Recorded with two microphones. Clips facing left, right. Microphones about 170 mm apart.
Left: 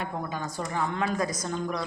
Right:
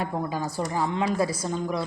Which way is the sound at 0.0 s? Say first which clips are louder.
Right 4 dB; 35° right (ahead or behind).